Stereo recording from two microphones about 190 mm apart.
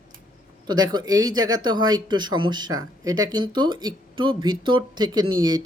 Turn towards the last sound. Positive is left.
turn(degrees=-20)  # may be behind; listen again after turning